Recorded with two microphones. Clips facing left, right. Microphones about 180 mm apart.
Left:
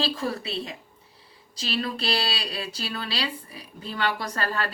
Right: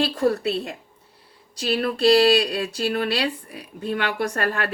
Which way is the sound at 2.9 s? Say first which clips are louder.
Right 5 dB; 60° right (ahead or behind).